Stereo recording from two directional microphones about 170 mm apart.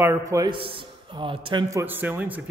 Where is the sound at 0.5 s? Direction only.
30° right (ahead or behind).